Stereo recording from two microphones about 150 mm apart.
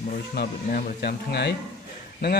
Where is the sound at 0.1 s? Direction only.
80° left.